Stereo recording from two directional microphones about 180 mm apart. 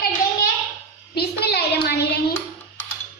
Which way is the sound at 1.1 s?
65° left (ahead or behind).